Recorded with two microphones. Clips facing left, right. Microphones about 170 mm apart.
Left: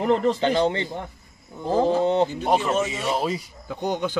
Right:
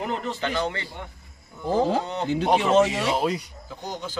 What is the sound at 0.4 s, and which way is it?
Speech, 30° left (ahead or behind).